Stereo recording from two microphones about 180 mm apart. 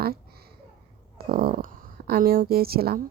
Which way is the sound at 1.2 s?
55° right (ahead or behind).